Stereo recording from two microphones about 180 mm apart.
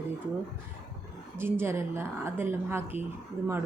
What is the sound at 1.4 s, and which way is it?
A woman's voice, 15° right (ahead or behind).